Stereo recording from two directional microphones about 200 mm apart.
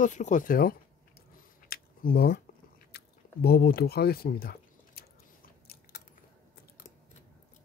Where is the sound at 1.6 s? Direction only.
50° left (ahead or behind).